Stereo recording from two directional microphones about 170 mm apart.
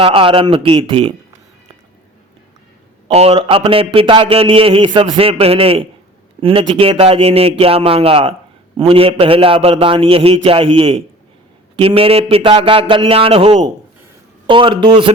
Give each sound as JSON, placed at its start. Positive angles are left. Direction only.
{"t": 0.0, "sound": "a man's voice", "side_deg": -30}
{"t": 3.1, "sound": "a man's voice", "side_deg": -35}